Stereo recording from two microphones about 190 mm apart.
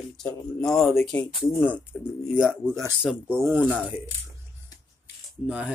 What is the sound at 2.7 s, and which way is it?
Speech, 15° right (ahead or behind).